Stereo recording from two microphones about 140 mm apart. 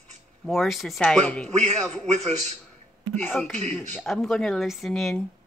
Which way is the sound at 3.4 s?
10° left (ahead or behind).